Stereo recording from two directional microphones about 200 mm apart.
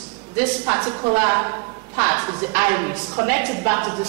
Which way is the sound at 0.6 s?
20° right (ahead or behind).